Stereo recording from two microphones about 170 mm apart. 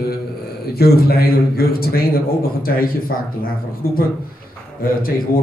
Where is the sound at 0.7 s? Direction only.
65° left (ahead or behind).